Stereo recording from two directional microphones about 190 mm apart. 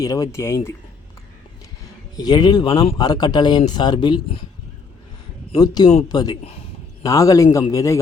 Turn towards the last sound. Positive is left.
turn(degrees=15)  # may be behind; listen again after turning